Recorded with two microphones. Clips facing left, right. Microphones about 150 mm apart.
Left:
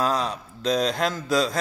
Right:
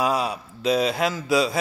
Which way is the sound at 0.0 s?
10° right (ahead or behind).